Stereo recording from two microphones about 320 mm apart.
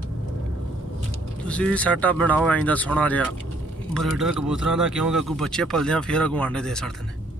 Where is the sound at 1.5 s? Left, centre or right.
Centre.